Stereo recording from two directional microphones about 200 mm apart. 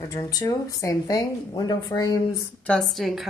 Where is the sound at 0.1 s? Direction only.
20° left (ahead or behind).